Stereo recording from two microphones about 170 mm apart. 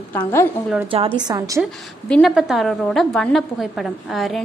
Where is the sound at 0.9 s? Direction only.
30° right (ahead or behind).